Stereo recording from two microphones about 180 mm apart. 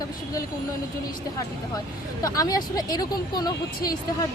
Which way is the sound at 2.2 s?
20° left (ahead or behind).